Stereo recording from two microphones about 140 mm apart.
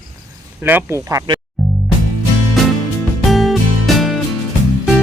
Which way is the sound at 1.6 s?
Centre (ahead or behind).